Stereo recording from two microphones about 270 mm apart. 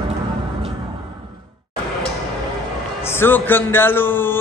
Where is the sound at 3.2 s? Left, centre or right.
Centre.